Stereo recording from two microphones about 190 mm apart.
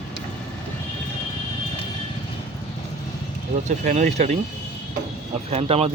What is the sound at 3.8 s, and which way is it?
Speech, 40° right (ahead or behind).